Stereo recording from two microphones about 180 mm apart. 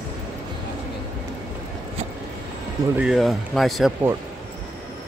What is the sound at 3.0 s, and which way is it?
Speech, centre (ahead or behind).